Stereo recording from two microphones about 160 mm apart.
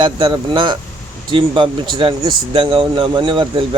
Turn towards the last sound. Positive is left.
turn(degrees=-30)  # may be behind; listen again after turning